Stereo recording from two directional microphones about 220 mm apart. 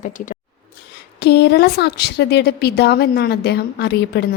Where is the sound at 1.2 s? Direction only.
50° left (ahead or behind).